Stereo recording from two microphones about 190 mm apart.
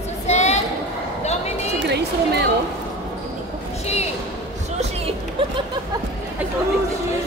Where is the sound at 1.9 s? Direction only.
60° right (ahead or behind).